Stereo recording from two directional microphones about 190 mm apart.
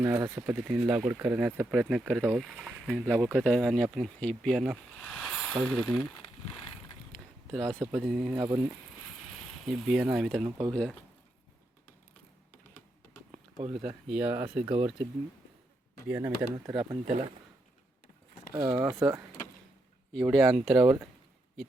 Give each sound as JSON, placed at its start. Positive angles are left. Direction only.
{"t": 0.0, "sound": "speech", "side_deg": -10}
{"t": 7.1, "sound": "speech", "side_deg": 0}
{"t": 8.4, "sound": "speech", "side_deg": -15}
{"t": 9.6, "sound": "speech", "side_deg": 0}
{"t": 13.3, "sound": "a sound", "side_deg": -30}
{"t": 14.1, "sound": "speech", "side_deg": -10}
{"t": 14.7, "sound": "speech", "side_deg": -30}
{"t": 16.0, "sound": "speech", "side_deg": -10}
{"t": 17.1, "sound": "speech", "side_deg": -35}
{"t": 18.5, "sound": "speech", "side_deg": -20}
{"t": 20.3, "sound": "speech", "side_deg": 0}